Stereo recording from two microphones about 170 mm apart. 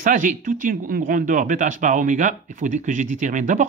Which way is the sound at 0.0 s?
50° right (ahead or behind).